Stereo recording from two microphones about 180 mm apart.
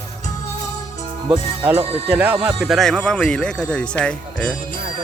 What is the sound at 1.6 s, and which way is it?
Speech, 10° right (ahead or behind).